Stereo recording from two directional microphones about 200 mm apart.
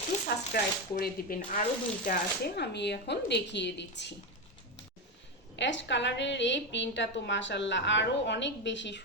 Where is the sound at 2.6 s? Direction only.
55° left (ahead or behind).